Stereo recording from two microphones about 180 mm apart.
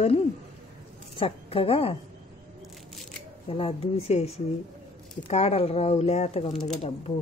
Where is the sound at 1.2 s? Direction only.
30° left (ahead or behind).